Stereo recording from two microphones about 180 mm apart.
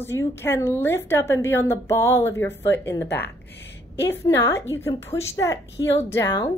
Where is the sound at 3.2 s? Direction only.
75° left (ahead or behind).